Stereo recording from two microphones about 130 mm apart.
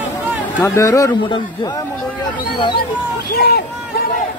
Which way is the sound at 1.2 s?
35° left (ahead or behind).